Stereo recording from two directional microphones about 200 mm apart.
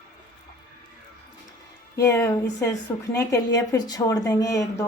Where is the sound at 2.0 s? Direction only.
15° left (ahead or behind).